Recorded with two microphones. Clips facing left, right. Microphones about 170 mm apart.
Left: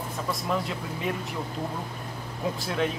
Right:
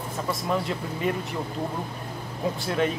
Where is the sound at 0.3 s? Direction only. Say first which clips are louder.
Right 2 dB; centre (ahead or behind).